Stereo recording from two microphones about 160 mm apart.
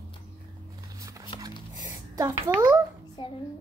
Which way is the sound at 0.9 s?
20° right (ahead or behind).